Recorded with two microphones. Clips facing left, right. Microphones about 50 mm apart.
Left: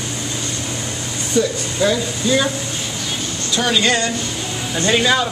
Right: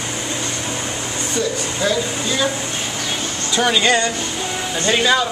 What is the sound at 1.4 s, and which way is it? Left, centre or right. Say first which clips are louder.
Speech: left 5 dB; centre.